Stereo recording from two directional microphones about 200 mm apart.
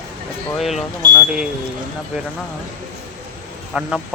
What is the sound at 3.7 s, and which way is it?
Speech, 5° right (ahead or behind).